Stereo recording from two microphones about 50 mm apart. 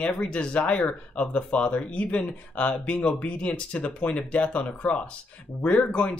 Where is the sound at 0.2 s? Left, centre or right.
Left.